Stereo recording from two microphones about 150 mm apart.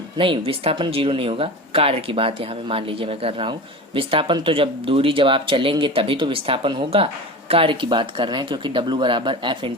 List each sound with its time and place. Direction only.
0.2 s speech: 35° right (ahead or behind)